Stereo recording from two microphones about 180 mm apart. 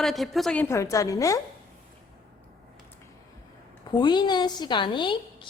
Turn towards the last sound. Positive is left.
turn(degrees=25)  # may be behind; listen again after turning